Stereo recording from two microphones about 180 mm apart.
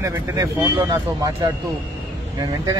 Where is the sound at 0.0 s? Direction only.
15° right (ahead or behind).